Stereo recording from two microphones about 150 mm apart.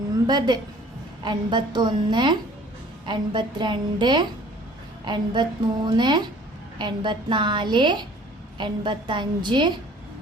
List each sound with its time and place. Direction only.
0.3 s a woman's voice: 30° right (ahead or behind)